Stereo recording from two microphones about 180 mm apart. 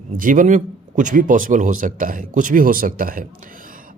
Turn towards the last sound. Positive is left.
turn(degrees=-50)  # may be behind; listen again after turning